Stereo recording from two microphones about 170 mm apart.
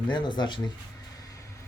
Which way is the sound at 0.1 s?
25° left (ahead or behind).